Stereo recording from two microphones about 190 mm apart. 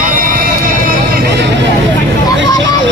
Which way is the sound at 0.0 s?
45° right (ahead or behind).